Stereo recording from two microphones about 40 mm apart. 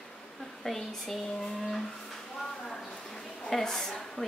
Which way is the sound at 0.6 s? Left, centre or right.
Centre.